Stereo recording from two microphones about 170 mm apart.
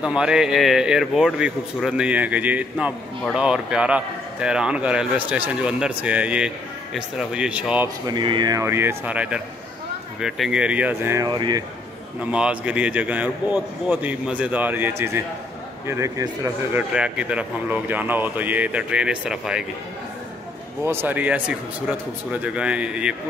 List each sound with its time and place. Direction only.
0.0 s a man's voice: 5° right (ahead or behind)
8.1 s a man's voice: 25° right (ahead or behind)
11.2 s speech: 25° right (ahead or behind)
12.2 s a man's voice: 5° right (ahead or behind)
16.9 s a man's voice: 5° right (ahead or behind)
20.8 s a man's voice: 15° right (ahead or behind)